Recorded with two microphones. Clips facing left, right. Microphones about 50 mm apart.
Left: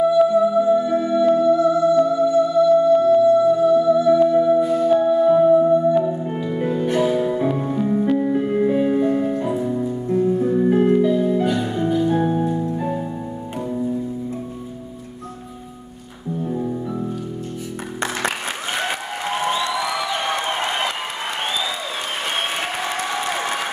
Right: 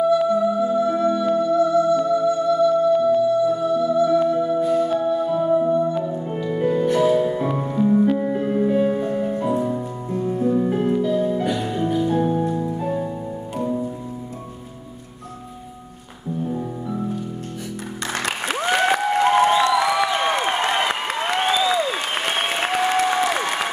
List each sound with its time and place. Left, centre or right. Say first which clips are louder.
0.2 s music: left 4 dB; centre
5.4 s music: left 4 dB; centre
6.9 s music: even; centre
8.5 s music: right 2 dB; centre
9.6 s music: left 2 dB; centre
10.4 s music: right 1 dB; centre
12.1 s music: left 1 dB; centre